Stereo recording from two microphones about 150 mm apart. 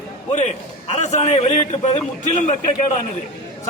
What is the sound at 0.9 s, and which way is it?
A man's voice, 50° left (ahead or behind).